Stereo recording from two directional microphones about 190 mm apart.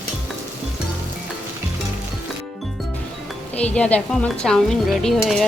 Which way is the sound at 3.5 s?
5° left (ahead or behind).